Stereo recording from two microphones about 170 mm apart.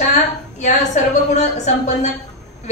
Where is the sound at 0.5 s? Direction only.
45° left (ahead or behind).